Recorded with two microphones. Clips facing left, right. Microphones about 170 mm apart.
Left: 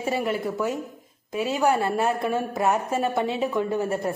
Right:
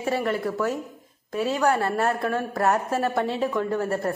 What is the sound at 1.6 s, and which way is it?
Speech, 15° left (ahead or behind).